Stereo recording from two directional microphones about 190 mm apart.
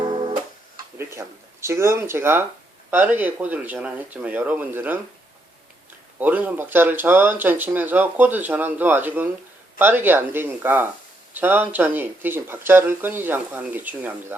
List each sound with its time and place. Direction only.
0.0 s music: 25° right (ahead or behind)
0.9 s speech: 15° right (ahead or behind)
6.1 s speech: 10° right (ahead or behind)